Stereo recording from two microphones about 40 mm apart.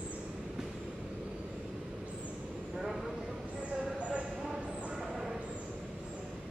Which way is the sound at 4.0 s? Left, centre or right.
Right.